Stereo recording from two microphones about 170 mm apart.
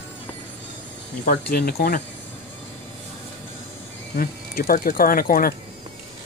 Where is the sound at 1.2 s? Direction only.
65° left (ahead or behind).